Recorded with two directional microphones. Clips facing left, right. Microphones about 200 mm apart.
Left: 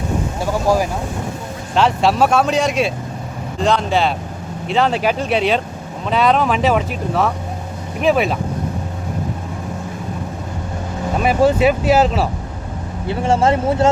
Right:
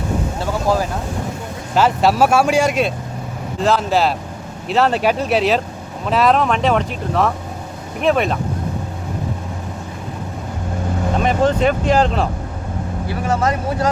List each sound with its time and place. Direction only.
0.3 s vehicle: 15° left (ahead or behind)
1.7 s speech: 5° right (ahead or behind)
11.2 s speech: 10° left (ahead or behind)
13.1 s speech: 25° left (ahead or behind)